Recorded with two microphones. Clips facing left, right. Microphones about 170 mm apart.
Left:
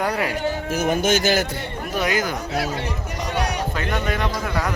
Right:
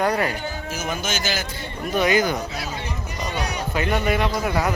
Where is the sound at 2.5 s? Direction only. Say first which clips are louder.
Left 6 dB; 70° left (ahead or behind).